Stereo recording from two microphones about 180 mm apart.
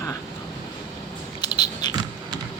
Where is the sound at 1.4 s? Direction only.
25° left (ahead or behind).